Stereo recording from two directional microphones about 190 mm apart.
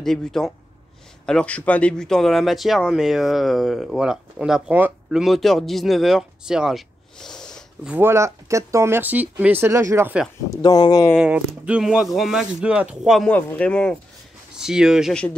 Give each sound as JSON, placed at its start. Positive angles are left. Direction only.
{"t": 0.0, "sound": "speech", "side_deg": 0}
{"t": 7.9, "sound": "speech", "side_deg": -15}
{"t": 10.5, "sound": "speech", "side_deg": 20}
{"t": 11.1, "sound": "speech", "side_deg": -5}